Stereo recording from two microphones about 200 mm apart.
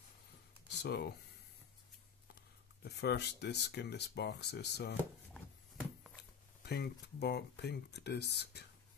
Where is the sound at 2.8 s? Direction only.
55° left (ahead or behind).